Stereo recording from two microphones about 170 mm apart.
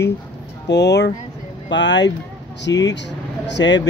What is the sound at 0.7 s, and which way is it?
Speech, 90° left.